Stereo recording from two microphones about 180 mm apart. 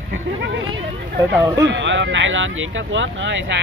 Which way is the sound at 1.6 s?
90° right.